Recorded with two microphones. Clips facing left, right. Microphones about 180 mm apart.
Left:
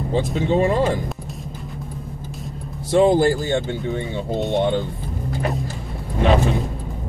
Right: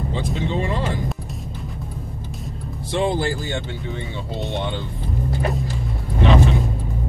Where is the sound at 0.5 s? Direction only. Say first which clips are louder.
Left 8 dB; 45° left (ahead or behind).